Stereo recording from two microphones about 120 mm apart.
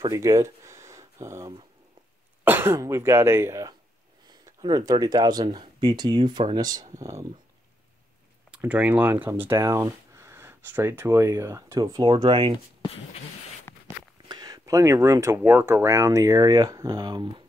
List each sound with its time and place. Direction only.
0.0 s speech: 30° right (ahead or behind)
4.3 s speech: 35° right (ahead or behind)
8.5 s speech: 15° right (ahead or behind); by 12.5 s 45° right (ahead or behind)
14.2 s speech: 35° right (ahead or behind)